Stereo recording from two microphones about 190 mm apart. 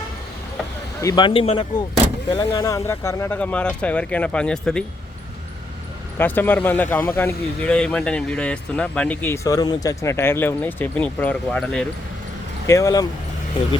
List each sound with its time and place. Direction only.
1.0 s speech: 25° left (ahead or behind)
2.6 s speech: 15° left (ahead or behind)
6.1 s speech: 10° left (ahead or behind)
12.6 s speech: 15° left (ahead or behind)